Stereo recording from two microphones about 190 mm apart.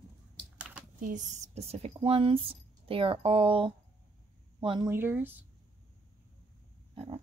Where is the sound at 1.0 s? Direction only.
40° right (ahead or behind); by 4.9 s 25° right (ahead or behind).